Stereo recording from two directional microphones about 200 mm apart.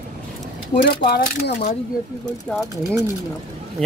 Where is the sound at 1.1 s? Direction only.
50° left (ahead or behind).